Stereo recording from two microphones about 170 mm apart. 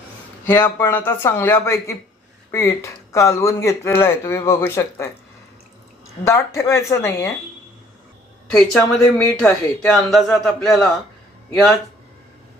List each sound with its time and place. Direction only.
0.6 s speech: 10° left (ahead or behind)
6.2 s speech: 15° left (ahead or behind)
8.4 s speech: 5° left (ahead or behind)